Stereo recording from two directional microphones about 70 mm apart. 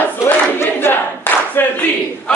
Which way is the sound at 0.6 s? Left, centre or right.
Left.